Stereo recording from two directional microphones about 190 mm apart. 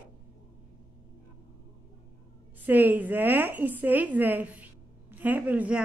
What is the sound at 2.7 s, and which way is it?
A woman's voice, 10° right (ahead or behind).